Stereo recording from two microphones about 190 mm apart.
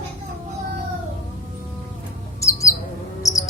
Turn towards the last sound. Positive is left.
turn(degrees=15)  # may be behind; listen again after turning